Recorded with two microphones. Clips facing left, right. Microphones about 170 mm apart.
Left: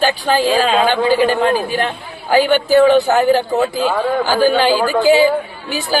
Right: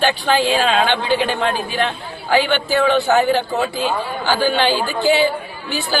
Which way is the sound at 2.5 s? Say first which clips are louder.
Left 5 dB; 10° left (ahead or behind).